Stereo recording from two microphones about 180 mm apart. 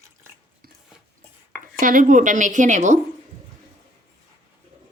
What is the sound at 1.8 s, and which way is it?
A woman's voice, 50° right (ahead or behind).